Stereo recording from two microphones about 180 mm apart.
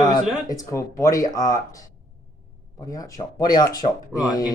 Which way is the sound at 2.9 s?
20° left (ahead or behind).